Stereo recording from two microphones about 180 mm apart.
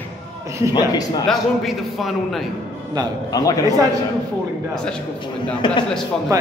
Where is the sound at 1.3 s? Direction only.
Centre (ahead or behind).